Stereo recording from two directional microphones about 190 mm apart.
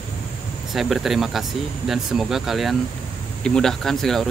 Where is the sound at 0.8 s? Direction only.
Centre (ahead or behind).